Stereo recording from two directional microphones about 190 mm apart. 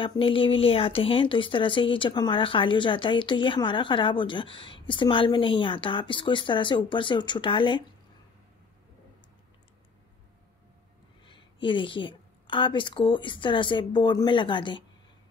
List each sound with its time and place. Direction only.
0.0 s speech: 25° left (ahead or behind)
11.2 s speech: 25° left (ahead or behind)